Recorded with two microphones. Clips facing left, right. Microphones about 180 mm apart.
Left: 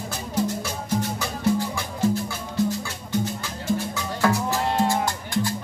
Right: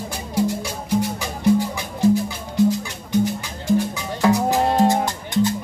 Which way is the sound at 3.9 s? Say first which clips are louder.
Right 4 dB; 15° right (ahead or behind).